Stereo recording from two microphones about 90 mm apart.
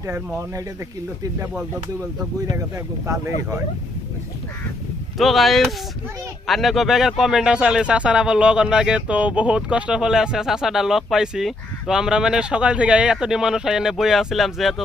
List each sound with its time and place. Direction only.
3.1 s speech: 30° right (ahead or behind)
5.2 s speech: centre (ahead or behind)